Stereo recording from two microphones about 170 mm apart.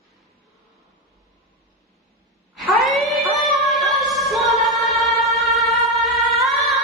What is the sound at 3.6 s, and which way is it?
Music, centre (ahead or behind).